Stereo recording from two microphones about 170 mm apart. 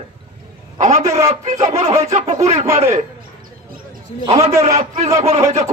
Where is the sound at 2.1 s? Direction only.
40° right (ahead or behind).